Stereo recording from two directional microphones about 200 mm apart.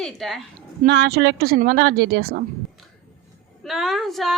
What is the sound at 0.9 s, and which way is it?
A woman's voice, 55° right (ahead or behind).